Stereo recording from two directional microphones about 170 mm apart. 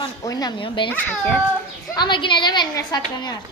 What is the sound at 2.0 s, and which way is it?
A woman's voice, 30° left (ahead or behind).